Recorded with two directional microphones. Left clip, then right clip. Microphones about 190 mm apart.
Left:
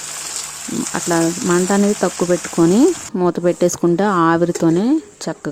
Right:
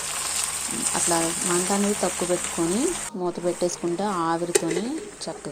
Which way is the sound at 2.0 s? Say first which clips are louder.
Left 7 dB; 50° left (ahead or behind).